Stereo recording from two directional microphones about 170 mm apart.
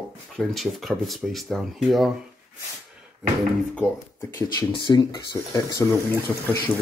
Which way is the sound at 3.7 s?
15° left (ahead or behind).